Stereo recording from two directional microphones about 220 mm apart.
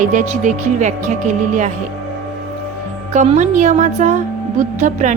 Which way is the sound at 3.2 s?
35° right (ahead or behind).